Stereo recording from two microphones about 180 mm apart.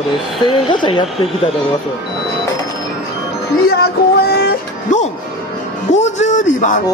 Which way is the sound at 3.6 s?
60° left (ahead or behind).